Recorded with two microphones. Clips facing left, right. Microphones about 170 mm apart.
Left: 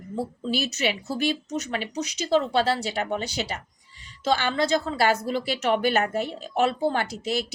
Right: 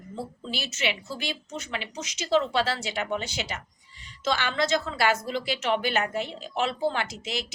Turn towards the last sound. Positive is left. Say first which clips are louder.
# left 3 dB
turn(degrees=40)  # may be behind; listen again after turning